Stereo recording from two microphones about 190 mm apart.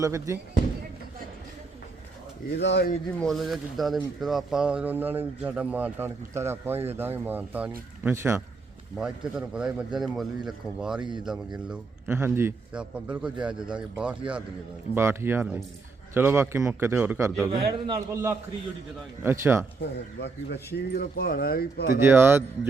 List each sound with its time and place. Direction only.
0.0 s speech: 15° right (ahead or behind)
2.6 s speech: 65° left (ahead or behind)
3.2 s a man's voice: centre (ahead or behind)
11.0 s a man's voice: 25° right (ahead or behind)
11.3 s a man's voice: 5° right (ahead or behind)
17.4 s a man's voice: 25° right (ahead or behind)
19.2 s speech: 10° right (ahead or behind)
19.8 s speech: 65° left (ahead or behind)
22.0 s speech: 10° right (ahead or behind)